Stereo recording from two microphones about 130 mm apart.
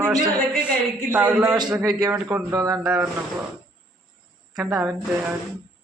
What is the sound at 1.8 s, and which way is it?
Speech, 30° right (ahead or behind).